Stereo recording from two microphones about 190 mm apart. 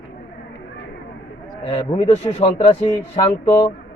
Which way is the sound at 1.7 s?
35° left (ahead or behind).